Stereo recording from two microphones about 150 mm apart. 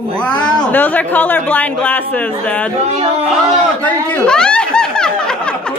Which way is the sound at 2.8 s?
45° right (ahead or behind).